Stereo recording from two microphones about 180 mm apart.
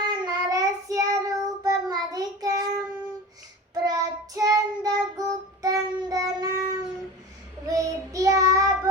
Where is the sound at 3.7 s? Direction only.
20° right (ahead or behind).